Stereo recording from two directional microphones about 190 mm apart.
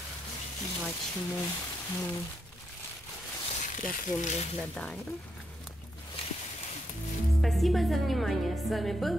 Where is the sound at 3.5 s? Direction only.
40° left (ahead or behind).